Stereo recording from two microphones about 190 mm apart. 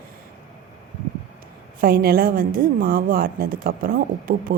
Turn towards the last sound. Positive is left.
turn(degrees=-50)  # may be behind; listen again after turning